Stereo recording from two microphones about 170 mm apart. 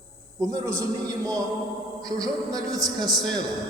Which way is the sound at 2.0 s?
20° right (ahead or behind).